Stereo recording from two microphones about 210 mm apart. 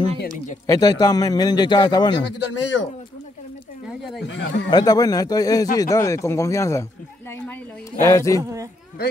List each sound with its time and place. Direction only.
0.7 s a man's voice: 15° left (ahead or behind)
2.5 s speech: 60° left (ahead or behind)
4.3 s speech: 60° left (ahead or behind)
4.6 s a man's voice: 20° left (ahead or behind)
8.4 s speech: 15° right (ahead or behind)